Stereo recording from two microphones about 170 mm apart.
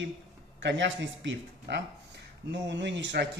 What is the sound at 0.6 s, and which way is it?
Speech, 90° right.